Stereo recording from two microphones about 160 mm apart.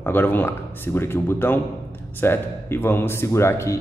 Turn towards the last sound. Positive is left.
turn(degrees=15)  # may be behind; listen again after turning